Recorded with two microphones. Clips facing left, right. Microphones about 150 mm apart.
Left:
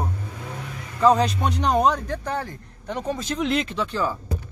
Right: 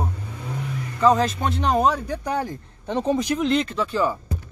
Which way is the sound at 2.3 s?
15° right (ahead or behind).